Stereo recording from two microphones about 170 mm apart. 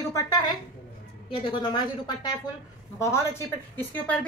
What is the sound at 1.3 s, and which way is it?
A woman's voice, 30° left (ahead or behind).